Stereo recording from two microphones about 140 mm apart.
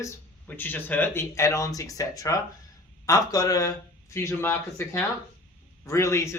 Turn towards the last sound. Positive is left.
turn(degrees=20)  # may be behind; listen again after turning